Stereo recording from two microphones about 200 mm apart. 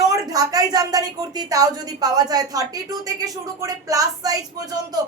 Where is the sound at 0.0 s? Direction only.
20° right (ahead or behind).